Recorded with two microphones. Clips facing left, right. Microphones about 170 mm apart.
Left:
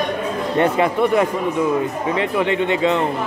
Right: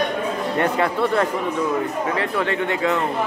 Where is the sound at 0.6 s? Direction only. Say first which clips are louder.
Left 4 dB; 15° left (ahead or behind).